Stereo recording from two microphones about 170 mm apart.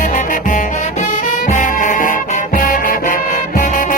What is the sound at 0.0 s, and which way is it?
Music, 50° left (ahead or behind).